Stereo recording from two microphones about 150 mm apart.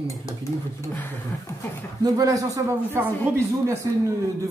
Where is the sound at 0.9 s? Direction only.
15° left (ahead or behind).